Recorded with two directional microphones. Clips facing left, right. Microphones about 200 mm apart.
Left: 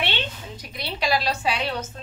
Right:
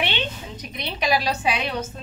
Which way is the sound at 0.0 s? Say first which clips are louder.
Right 2 dB; 20° right (ahead or behind).